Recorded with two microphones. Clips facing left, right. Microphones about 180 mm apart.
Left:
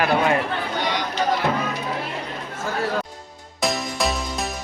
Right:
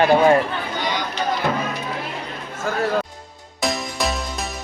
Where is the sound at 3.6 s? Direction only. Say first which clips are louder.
Even; centre (ahead or behind).